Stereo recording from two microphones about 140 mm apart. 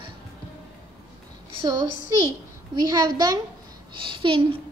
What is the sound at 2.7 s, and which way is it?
A woman's voice, 30° right (ahead or behind).